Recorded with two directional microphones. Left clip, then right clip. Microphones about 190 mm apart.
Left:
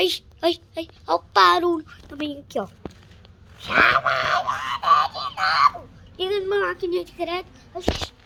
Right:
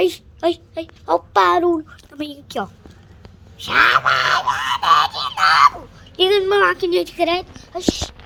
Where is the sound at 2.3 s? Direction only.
5° left (ahead or behind).